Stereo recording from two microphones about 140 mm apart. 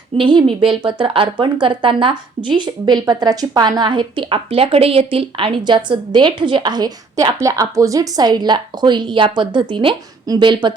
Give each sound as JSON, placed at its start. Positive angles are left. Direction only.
{"t": 0.2, "sound": "a woman's voice", "side_deg": -35}